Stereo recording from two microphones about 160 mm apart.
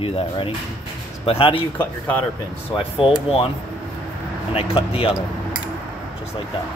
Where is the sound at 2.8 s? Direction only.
35° left (ahead or behind).